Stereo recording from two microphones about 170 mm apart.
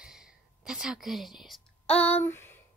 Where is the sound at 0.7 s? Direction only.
5° right (ahead or behind); by 2.4 s 10° left (ahead or behind).